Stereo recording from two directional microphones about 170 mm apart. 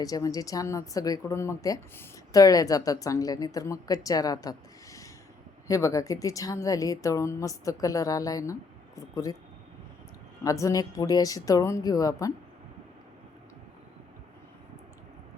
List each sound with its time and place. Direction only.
0.0 s speech: 20° left (ahead or behind)
10.4 s speech: 20° left (ahead or behind)